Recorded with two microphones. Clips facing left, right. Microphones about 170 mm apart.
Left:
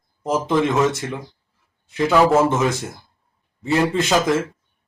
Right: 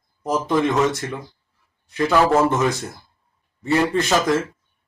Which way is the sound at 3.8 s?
20° left (ahead or behind).